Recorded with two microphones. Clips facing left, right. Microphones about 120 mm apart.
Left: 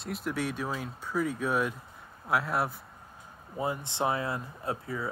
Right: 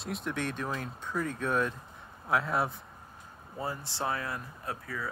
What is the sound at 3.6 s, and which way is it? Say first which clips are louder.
Speech: left 4 dB; 20° left (ahead or behind).